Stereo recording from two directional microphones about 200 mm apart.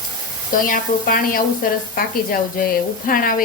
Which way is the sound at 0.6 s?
45° left (ahead or behind).